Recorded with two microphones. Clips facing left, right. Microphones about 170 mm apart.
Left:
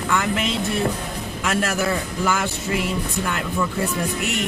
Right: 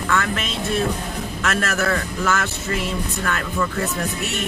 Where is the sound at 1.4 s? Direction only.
10° left (ahead or behind).